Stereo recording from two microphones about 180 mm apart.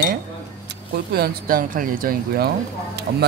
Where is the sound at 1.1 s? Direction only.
55° right (ahead or behind).